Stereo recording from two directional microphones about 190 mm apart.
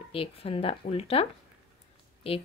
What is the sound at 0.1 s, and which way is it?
Speech, 30° left (ahead or behind).